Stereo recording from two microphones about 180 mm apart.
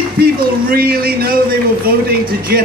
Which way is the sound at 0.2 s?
55° right (ahead or behind).